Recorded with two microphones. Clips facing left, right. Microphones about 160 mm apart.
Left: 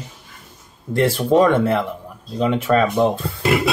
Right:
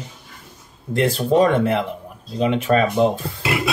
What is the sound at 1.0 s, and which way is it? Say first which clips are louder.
Speech: left 1 dB; 15° right (ahead or behind).